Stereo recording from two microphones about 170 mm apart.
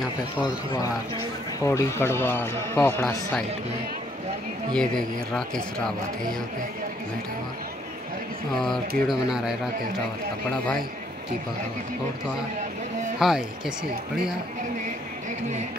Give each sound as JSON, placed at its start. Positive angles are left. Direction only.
{"t": 0.4, "sound": "a man's voice", "side_deg": 20}
{"t": 4.7, "sound": "speech", "side_deg": 5}
{"t": 8.6, "sound": "speech", "side_deg": 0}
{"t": 13.2, "sound": "speech", "side_deg": 0}